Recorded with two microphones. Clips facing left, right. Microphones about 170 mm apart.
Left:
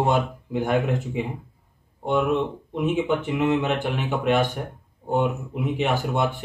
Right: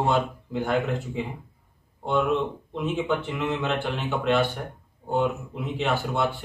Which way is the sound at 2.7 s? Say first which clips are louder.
Left 4 dB; 15° left (ahead or behind).